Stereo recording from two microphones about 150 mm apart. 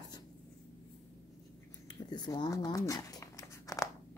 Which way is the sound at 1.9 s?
30° left (ahead or behind).